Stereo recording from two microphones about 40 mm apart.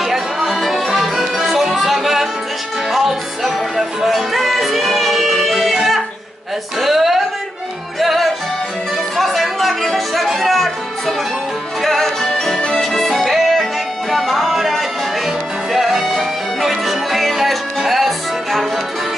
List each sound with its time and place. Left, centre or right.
0.0 s music: centre
6.8 s speech: centre
8.0 s music: centre
12.9 s music: centre